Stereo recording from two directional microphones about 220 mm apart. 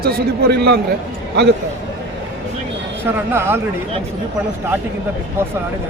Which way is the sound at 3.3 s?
10° right (ahead or behind).